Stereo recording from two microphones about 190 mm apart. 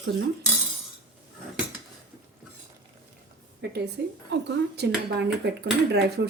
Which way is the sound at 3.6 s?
55° right (ahead or behind).